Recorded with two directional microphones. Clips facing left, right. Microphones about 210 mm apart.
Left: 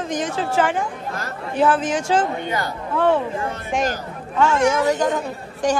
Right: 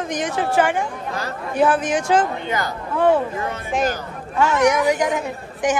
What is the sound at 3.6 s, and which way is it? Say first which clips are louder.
Speech: right 1 dB; centre (ahead or behind).